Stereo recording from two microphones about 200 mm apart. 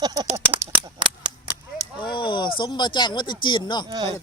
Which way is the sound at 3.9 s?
20° right (ahead or behind).